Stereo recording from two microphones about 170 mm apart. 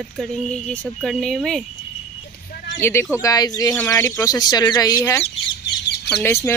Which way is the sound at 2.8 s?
15° left (ahead or behind).